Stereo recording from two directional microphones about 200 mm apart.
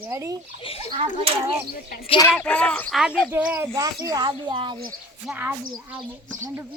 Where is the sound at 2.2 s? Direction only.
10° left (ahead or behind).